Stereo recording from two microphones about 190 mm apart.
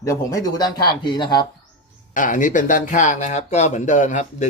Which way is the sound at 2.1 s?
45° left (ahead or behind).